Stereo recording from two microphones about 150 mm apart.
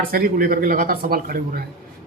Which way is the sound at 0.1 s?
75° right (ahead or behind).